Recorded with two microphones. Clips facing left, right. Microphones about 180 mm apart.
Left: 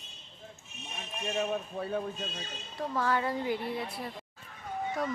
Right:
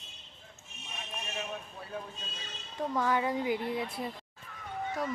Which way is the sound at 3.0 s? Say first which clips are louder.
Even; 15° right (ahead or behind).